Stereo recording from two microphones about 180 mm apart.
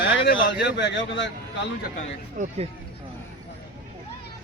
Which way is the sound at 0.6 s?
75° left (ahead or behind).